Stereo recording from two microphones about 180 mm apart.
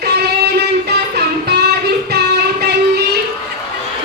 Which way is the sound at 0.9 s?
65° right (ahead or behind).